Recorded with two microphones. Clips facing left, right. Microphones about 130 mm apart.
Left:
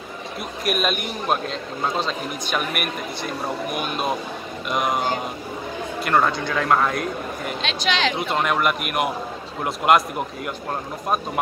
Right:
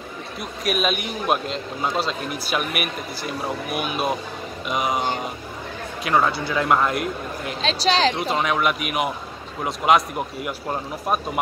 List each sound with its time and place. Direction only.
0.4 s a man's voice: centre (ahead or behind)
7.6 s speech: 35° right (ahead or behind)
8.3 s a man's voice: centre (ahead or behind)